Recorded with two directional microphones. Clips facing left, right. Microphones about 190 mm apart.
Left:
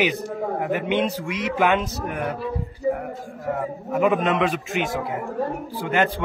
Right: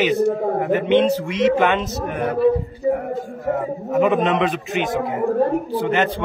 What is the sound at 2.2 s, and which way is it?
Speech, 60° right (ahead or behind).